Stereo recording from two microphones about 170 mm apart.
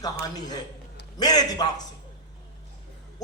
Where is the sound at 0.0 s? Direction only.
25° left (ahead or behind).